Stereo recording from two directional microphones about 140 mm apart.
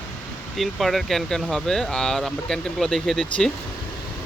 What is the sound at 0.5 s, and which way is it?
Speech, centre (ahead or behind).